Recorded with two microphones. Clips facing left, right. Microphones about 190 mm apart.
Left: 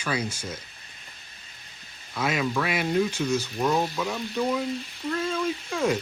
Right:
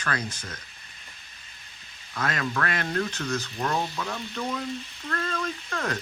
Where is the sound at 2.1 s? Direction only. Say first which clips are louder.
Left 3 dB; 10° left (ahead or behind).